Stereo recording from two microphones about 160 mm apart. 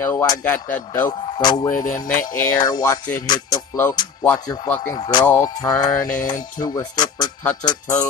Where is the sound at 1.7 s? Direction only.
55° left (ahead or behind).